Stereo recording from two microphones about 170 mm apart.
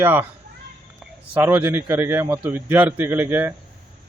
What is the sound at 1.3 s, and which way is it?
A man's voice, 10° right (ahead or behind).